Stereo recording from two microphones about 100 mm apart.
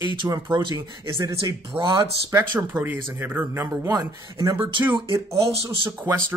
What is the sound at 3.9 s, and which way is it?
Speech, 35° right (ahead or behind).